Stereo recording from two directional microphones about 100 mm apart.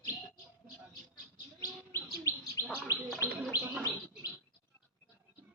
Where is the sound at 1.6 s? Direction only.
30° left (ahead or behind).